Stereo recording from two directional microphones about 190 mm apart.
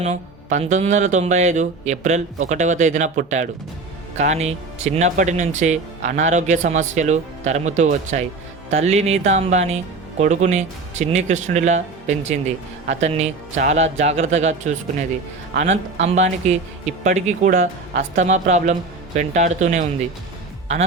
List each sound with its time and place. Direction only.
0.0 s speech: 35° right (ahead or behind)